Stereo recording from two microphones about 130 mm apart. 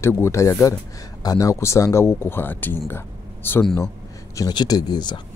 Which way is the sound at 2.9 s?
15° left (ahead or behind).